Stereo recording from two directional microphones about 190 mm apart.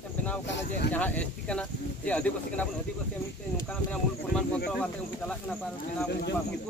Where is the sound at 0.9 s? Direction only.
10° left (ahead or behind).